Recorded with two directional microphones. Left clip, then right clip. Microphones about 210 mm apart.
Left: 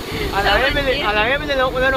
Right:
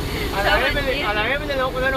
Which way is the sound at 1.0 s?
40° left (ahead or behind).